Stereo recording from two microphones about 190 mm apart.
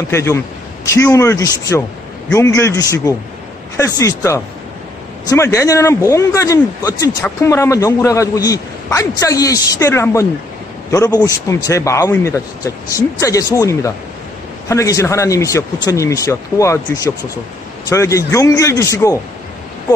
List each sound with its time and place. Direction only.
0.1 s a man's voice: 15° left (ahead or behind)